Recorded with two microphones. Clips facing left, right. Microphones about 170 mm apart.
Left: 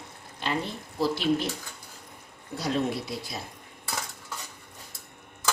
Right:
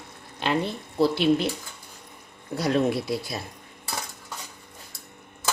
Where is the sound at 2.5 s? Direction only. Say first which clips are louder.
Right 5 dB; 65° right (ahead or behind).